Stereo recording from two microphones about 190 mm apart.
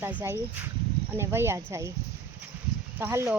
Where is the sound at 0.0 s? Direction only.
10° right (ahead or behind).